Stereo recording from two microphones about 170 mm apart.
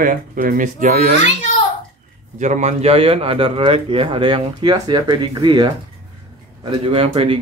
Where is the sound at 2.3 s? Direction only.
45° right (ahead or behind).